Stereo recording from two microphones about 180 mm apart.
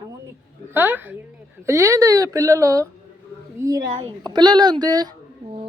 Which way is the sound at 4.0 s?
25° right (ahead or behind).